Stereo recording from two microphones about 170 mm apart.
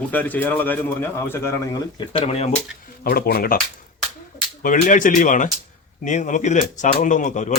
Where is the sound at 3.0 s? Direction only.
60° left (ahead or behind).